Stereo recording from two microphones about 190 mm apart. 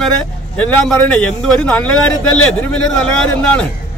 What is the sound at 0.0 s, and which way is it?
A man's voice, 5° left (ahead or behind).